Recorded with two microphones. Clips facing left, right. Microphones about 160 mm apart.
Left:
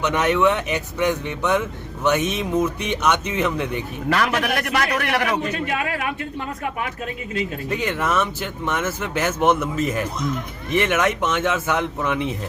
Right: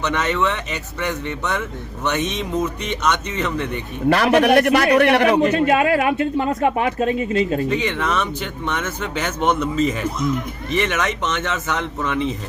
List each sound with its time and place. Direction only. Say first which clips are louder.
0.0 s speech: left 2 dB; 10° left (ahead or behind)
4.1 s a man's voice: right 7 dB; 30° right (ahead or behind)
5.5 s speech: right 9 dB; 75° right (ahead or behind); by 7.1 s 90° right
7.7 s speech: right 1 dB; 5° left (ahead or behind)